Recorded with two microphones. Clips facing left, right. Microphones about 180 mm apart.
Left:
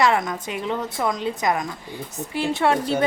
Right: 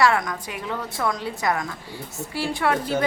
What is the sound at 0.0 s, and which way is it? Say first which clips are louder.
A woman's voice: even; 20° left (ahead or behind).